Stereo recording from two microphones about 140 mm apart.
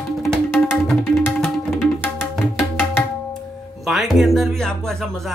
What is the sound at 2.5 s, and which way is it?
Tabla, 15° left (ahead or behind).